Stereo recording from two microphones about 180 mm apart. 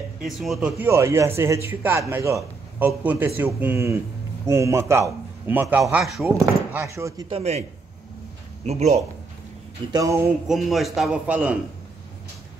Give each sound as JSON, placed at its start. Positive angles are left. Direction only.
{"t": 0.2, "sound": "a man's voice", "side_deg": 0}
{"t": 7.2, "sound": "a man's voice", "side_deg": -35}
{"t": 8.6, "sound": "a man's voice", "side_deg": -35}
{"t": 10.4, "sound": "a man's voice", "side_deg": 0}